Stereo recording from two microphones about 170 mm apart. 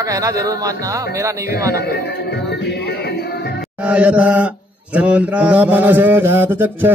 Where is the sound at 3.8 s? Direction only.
5° right (ahead or behind).